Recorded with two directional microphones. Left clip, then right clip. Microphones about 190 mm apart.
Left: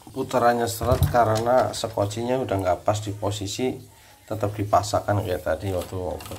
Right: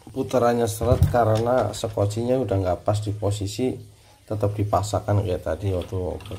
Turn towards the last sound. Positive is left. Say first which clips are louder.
# left 1 dB
turn(degrees=-15)  # may be behind; listen again after turning